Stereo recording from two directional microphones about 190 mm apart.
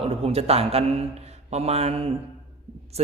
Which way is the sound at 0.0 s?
30° right (ahead or behind).